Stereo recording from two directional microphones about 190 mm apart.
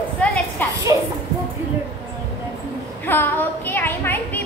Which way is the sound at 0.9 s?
20° right (ahead or behind).